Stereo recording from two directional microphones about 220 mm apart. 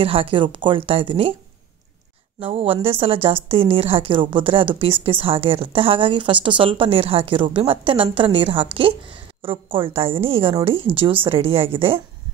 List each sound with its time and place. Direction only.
0.0 s a woman's voice: 25° right (ahead or behind)
2.4 s a woman's voice: 25° right (ahead or behind)